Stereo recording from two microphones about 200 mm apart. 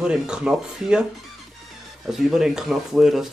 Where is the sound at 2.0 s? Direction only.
Centre (ahead or behind).